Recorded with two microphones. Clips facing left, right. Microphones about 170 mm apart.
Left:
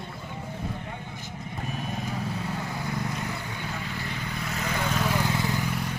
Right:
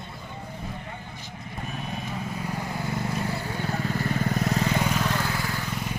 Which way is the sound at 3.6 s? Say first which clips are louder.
Right 6 dB; 40° right (ahead or behind).